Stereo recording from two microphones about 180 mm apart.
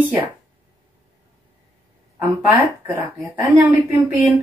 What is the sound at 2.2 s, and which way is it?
A woman's voice, 10° right (ahead or behind).